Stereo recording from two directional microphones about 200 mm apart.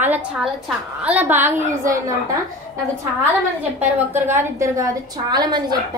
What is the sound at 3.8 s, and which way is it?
A woman's voice, 10° right (ahead or behind).